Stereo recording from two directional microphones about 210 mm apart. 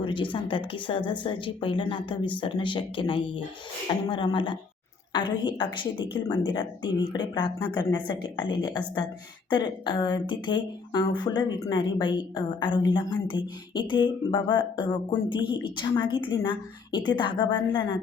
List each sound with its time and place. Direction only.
0.0 s speech: 25° left (ahead or behind)